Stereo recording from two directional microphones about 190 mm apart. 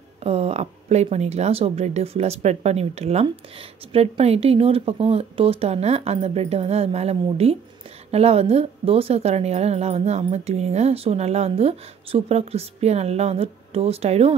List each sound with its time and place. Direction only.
0.2 s a woman's voice: 35° right (ahead or behind)